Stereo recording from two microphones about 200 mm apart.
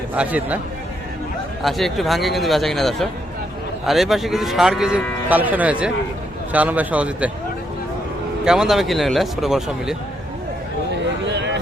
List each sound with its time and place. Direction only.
0.1 s speech: 5° right (ahead or behind)
1.6 s speech: centre (ahead or behind)
8.4 s speech: 5° right (ahead or behind)
10.9 s a sound: 60° right (ahead or behind)